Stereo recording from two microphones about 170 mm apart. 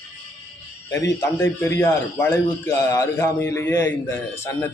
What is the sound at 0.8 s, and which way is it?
A man's voice, 15° left (ahead or behind).